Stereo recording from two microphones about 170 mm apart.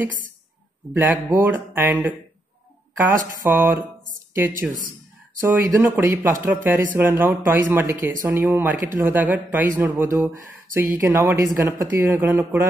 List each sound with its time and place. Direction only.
1.1 s speech: 15° right (ahead or behind)
3.4 s speech: 10° right (ahead or behind)